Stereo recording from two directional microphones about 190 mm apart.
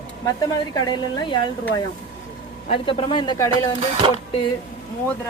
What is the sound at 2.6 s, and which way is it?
A woman's voice, 25° left (ahead or behind).